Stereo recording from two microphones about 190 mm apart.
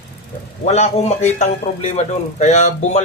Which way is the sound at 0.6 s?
35° left (ahead or behind).